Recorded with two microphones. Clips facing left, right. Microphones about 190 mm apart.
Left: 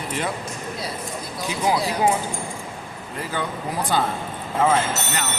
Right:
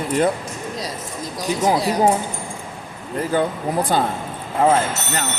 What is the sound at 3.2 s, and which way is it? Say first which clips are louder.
Speech: right 8 dB; 45° right (ahead or behind).